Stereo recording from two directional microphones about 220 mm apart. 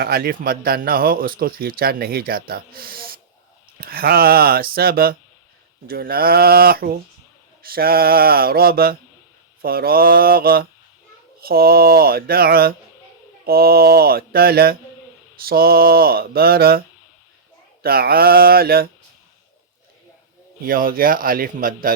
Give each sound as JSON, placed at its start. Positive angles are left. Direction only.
{"t": 0.0, "sound": "speech", "side_deg": -45}
{"t": 17.8, "sound": "speech", "side_deg": -45}
{"t": 20.7, "sound": "speech", "side_deg": -40}